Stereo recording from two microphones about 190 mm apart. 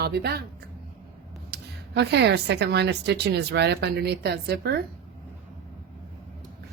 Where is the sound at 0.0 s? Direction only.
55° right (ahead or behind).